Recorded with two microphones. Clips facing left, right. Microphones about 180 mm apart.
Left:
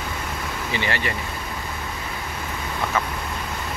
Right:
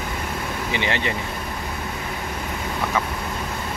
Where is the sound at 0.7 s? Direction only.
20° right (ahead or behind).